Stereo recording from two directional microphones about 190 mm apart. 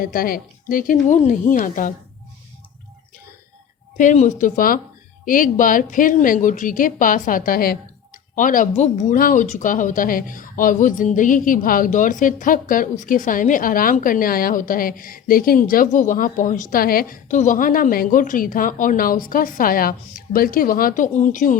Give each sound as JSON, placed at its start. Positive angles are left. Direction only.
{"t": 0.0, "sound": "speech", "side_deg": 50}
{"t": 3.9, "sound": "speech", "side_deg": 40}